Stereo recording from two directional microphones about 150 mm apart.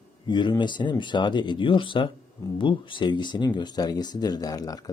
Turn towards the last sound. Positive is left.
turn(degrees=25)  # may be behind; listen again after turning